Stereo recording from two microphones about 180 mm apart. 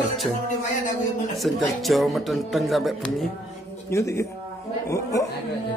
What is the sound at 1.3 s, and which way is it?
Speech, centre (ahead or behind).